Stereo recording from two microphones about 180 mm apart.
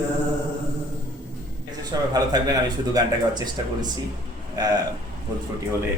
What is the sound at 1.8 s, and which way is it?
Speech, 20° right (ahead or behind).